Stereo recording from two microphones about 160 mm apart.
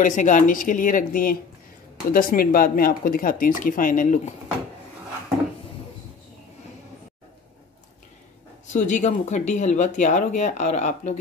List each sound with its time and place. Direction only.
0.0 s speech: 50° left (ahead or behind)
8.6 s speech: 50° left (ahead or behind)